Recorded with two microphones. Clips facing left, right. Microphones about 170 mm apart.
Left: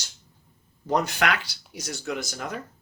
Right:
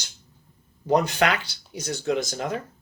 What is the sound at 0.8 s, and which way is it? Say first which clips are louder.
Speech: right 3 dB; 20° right (ahead or behind).